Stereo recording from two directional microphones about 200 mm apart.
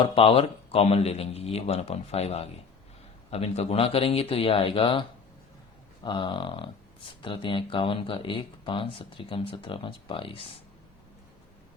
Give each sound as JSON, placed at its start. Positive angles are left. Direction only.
{"t": 0.0, "sound": "speech", "side_deg": 25}